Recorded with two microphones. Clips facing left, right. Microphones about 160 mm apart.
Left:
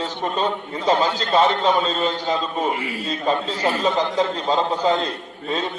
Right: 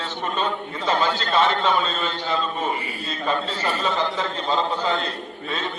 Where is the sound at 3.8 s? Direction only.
35° left (ahead or behind).